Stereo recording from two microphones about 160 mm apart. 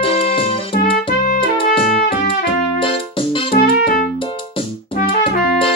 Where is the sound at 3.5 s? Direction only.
65° left (ahead or behind).